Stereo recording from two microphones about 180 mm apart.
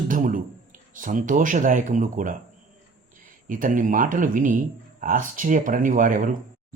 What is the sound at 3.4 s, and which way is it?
Speech, 50° right (ahead or behind).